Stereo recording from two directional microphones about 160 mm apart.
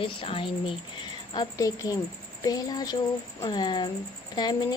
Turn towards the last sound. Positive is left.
turn(degrees=25)  # may be behind; listen again after turning